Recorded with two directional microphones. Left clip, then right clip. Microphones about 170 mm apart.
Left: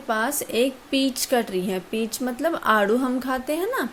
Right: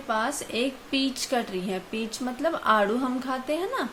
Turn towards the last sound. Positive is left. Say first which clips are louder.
# left 3 dB
turn(degrees=45)  # may be behind; listen again after turning